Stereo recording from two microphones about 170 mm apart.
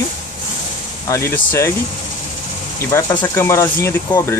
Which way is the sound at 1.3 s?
15° left (ahead or behind).